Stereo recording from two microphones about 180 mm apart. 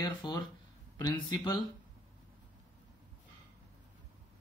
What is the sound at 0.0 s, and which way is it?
Speech, 20° left (ahead or behind).